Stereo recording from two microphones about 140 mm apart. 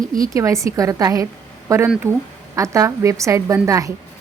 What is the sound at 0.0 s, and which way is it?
Speech, 75° right (ahead or behind).